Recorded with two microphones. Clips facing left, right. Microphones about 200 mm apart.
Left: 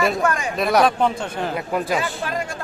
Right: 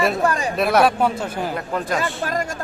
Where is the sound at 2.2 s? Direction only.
40° right (ahead or behind).